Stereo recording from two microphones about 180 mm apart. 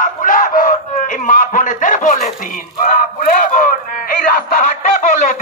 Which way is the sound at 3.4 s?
50° left (ahead or behind).